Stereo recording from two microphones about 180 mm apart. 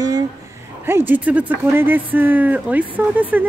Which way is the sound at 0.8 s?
10° right (ahead or behind).